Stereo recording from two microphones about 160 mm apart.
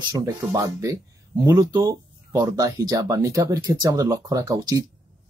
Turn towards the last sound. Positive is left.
turn(degrees=-20)  # may be behind; listen again after turning